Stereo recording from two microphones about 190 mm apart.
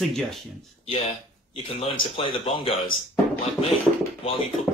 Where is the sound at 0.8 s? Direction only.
30° left (ahead or behind).